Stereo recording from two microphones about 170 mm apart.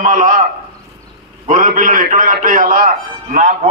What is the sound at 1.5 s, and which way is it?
A man's voice, 50° right (ahead or behind).